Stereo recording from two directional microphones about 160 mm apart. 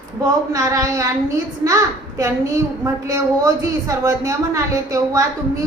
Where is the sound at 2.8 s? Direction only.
20° right (ahead or behind).